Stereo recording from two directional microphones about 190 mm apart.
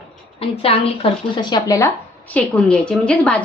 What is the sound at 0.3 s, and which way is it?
A woman's voice, 30° left (ahead or behind).